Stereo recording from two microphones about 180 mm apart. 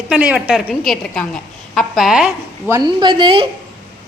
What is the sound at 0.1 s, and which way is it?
A woman's voice, 5° right (ahead or behind).